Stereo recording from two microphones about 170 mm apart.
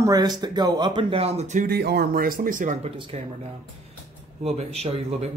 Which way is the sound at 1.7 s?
70° right (ahead or behind).